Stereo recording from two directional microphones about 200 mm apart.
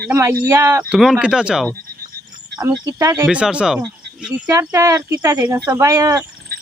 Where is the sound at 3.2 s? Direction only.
5° right (ahead or behind).